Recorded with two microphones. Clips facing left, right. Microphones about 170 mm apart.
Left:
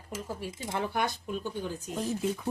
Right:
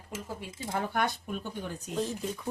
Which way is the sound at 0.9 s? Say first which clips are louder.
Right 2 dB; 55° right (ahead or behind).